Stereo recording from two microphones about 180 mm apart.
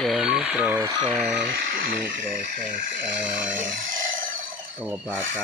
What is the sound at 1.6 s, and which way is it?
Speech, 50° right (ahead or behind).